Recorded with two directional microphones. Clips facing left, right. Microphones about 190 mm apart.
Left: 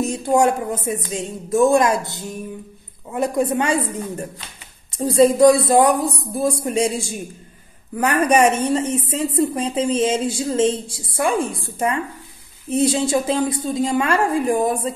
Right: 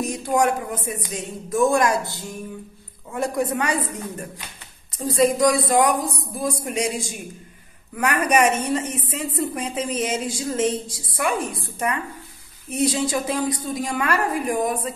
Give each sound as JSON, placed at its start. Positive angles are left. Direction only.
{"t": 0.0, "sound": "a woman's voice", "side_deg": 25}